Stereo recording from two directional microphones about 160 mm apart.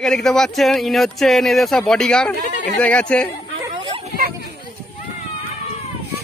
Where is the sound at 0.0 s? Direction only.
Centre (ahead or behind).